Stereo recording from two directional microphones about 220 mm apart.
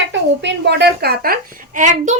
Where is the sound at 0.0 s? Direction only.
55° right (ahead or behind).